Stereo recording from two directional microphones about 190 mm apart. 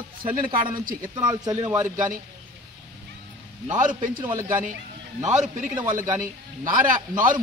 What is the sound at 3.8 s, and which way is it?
Speech, 40° right (ahead or behind).